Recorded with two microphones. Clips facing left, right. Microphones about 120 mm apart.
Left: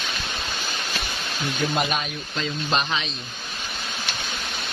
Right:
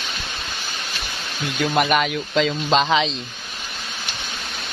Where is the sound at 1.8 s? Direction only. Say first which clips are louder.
Right 7 dB; 70° right (ahead or behind); by 3.0 s 90° right.